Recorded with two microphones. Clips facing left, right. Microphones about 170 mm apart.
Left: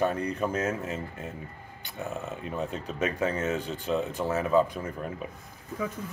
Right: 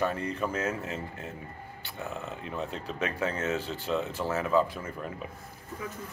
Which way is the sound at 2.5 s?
15° left (ahead or behind).